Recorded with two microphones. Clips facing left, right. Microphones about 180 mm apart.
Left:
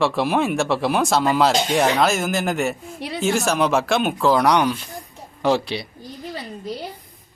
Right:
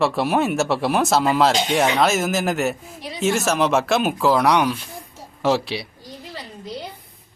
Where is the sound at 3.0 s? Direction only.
65° left (ahead or behind).